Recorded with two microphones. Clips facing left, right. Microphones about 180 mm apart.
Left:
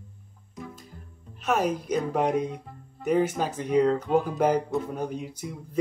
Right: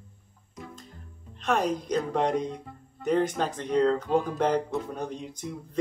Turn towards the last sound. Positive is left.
turn(degrees=10)  # may be behind; listen again after turning